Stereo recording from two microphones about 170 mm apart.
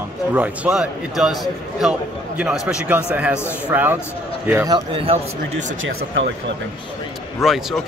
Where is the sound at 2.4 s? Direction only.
5° right (ahead or behind).